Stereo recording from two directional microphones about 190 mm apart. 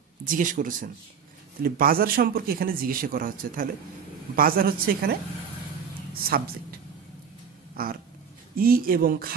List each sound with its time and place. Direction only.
0.2 s speech: 45° right (ahead or behind)
6.1 s a woman's voice: 50° right (ahead or behind)
7.7 s cat: 50° right (ahead or behind)
8.5 s speech: 50° right (ahead or behind)